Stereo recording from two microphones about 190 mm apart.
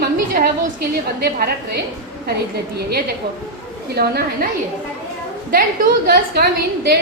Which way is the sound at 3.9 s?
55° right (ahead or behind).